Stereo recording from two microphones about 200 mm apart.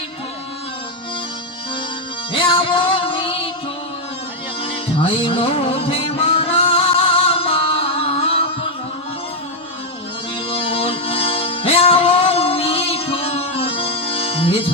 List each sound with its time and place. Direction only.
2.3 s music: 25° left (ahead or behind)
4.6 s music: 25° left (ahead or behind)
10.5 s music: 30° left (ahead or behind)